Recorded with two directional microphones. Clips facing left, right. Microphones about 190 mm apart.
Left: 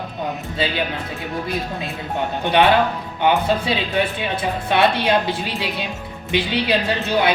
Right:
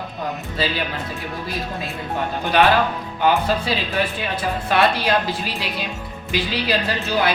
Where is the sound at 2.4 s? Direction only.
25° left (ahead or behind).